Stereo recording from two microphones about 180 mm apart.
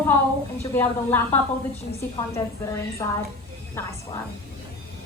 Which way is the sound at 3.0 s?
20° left (ahead or behind).